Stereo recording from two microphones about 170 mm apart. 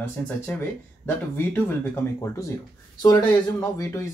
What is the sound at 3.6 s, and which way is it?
Speech, 15° left (ahead or behind).